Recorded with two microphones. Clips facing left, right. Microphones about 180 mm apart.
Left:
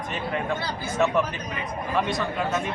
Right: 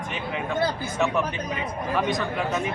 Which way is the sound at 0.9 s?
10° right (ahead or behind).